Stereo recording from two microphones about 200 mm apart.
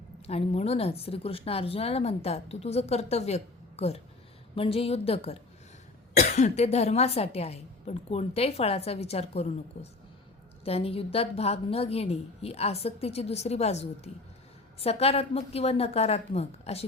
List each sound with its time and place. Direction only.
0.3 s a woman's voice: 30° left (ahead or behind)